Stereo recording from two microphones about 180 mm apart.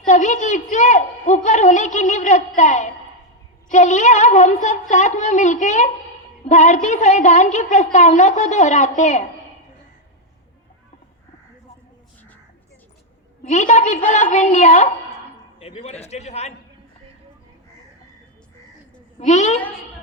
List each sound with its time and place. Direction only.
0.1 s a woman's voice: 45° left (ahead or behind)
13.5 s a woman's voice: 40° left (ahead or behind)
19.2 s a woman's voice: 40° left (ahead or behind)